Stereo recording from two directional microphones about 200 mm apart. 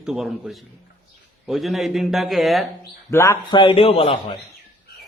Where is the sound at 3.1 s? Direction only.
15° left (ahead or behind).